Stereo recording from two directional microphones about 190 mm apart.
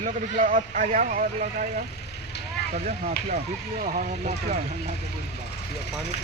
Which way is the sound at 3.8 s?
40° right (ahead or behind).